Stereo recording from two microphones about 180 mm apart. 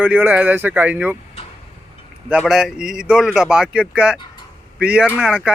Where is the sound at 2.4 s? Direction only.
5° right (ahead or behind).